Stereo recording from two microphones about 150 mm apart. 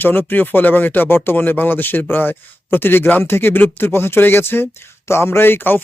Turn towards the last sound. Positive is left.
turn(degrees=15)  # may be behind; listen again after turning